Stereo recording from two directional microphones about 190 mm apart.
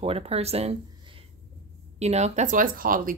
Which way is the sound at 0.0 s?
30° right (ahead or behind).